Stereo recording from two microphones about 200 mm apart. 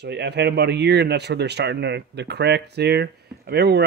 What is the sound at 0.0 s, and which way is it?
A man's voice, 55° right (ahead or behind).